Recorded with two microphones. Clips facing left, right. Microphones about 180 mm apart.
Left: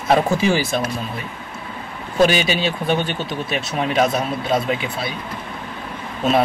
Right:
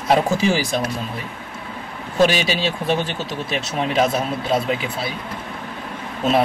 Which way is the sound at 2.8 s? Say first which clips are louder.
Left 1 dB; centre (ahead or behind).